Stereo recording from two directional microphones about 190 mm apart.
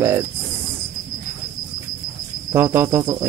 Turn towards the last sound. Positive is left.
turn(degrees=-15)  # may be behind; listen again after turning